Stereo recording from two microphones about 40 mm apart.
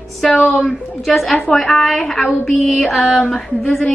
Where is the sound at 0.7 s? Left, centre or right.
Centre.